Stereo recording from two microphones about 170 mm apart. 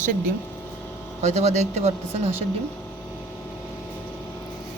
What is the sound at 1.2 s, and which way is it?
Speech, 40° right (ahead or behind).